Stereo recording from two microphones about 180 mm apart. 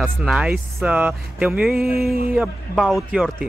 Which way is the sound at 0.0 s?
Centre (ahead or behind).